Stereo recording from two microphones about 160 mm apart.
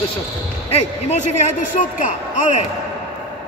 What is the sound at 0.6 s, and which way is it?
Speech, 40° left (ahead or behind).